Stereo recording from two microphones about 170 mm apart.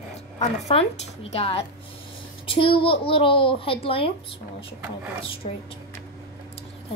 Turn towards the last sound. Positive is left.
turn(degrees=35)  # may be behind; listen again after turning